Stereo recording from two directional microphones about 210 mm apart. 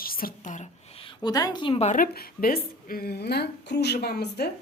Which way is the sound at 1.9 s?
40° left (ahead or behind).